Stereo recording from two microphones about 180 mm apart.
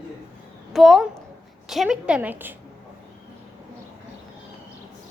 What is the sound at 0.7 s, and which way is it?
A child's voice, centre (ahead or behind).